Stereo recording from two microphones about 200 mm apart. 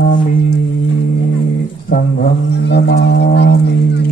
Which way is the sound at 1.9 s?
55° left (ahead or behind).